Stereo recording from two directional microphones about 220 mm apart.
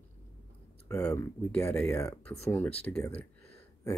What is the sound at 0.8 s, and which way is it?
Speech, 15° left (ahead or behind).